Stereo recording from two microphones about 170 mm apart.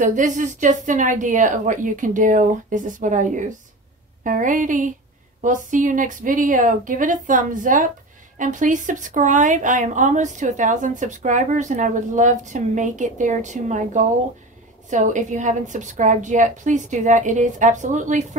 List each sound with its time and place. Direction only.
0.0 s speech: 50° right (ahead or behind)